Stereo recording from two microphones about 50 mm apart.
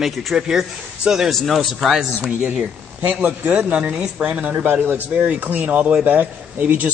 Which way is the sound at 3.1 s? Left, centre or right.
Right.